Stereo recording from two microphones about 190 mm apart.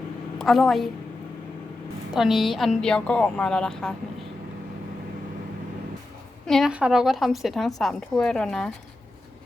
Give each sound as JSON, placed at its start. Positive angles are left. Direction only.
{"t": 0.3, "sound": "a woman's voice", "side_deg": 0}
{"t": 2.1, "sound": "a woman's voice", "side_deg": 0}
{"t": 6.4, "sound": "a woman's voice", "side_deg": 0}